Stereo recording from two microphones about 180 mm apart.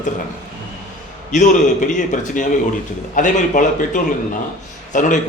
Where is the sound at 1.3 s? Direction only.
45° left (ahead or behind).